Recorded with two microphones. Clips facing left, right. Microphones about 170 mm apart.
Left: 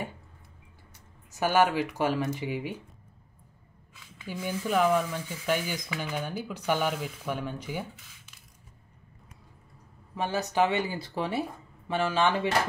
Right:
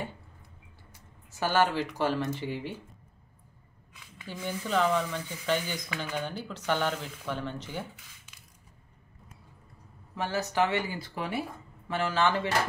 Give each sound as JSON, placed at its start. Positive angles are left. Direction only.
{"t": 1.4, "sound": "speech", "side_deg": 15}
{"t": 4.3, "sound": "speech", "side_deg": 10}
{"t": 10.1, "sound": "speech", "side_deg": 15}